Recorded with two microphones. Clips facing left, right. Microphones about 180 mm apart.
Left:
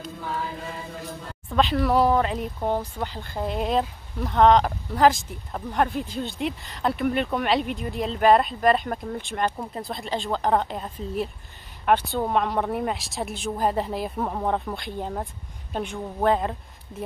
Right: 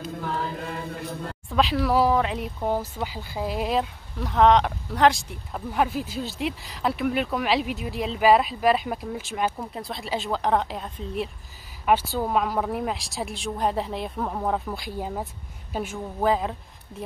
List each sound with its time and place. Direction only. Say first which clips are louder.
0.6 s chant: right 3 dB; 60° right (ahead or behind)
1.5 s speech: left 1 dB; centre (ahead or behind)